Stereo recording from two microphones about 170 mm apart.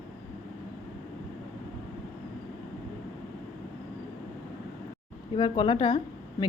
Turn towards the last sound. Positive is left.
turn(degrees=30)  # may be behind; listen again after turning